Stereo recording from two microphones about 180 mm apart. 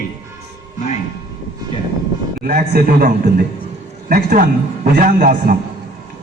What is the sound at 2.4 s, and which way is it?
A man's voice, 55° right (ahead or behind).